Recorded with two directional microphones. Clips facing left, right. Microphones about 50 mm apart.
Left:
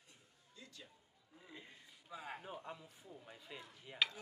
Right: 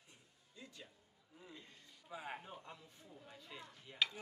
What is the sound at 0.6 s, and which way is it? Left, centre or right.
Music, centre.